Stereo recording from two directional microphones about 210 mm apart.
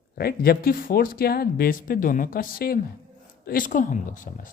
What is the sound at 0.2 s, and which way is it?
A man's voice, 45° left (ahead or behind).